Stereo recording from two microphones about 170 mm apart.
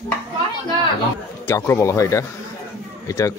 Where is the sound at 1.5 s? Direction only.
15° left (ahead or behind).